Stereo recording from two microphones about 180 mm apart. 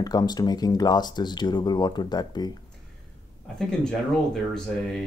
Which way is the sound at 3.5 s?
5° left (ahead or behind).